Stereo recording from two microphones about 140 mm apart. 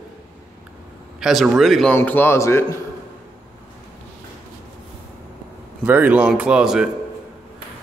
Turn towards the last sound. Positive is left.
turn(degrees=-5)  # may be behind; listen again after turning